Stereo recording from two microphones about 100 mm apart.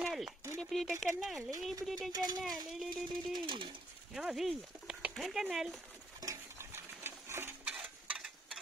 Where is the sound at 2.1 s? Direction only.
45° right (ahead or behind).